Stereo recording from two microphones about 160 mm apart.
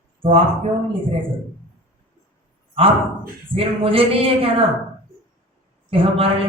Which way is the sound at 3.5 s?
35° right (ahead or behind).